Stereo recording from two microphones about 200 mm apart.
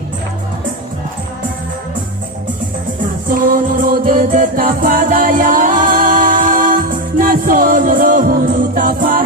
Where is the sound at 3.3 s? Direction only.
45° right (ahead or behind).